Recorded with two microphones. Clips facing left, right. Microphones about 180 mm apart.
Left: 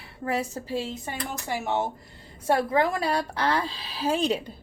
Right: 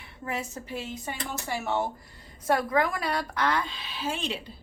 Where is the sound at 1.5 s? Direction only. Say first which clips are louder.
Left 2 dB; 20° left (ahead or behind); by 4.5 s 40° left (ahead or behind).